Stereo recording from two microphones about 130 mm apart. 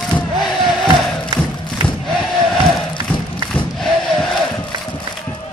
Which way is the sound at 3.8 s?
5° left (ahead or behind).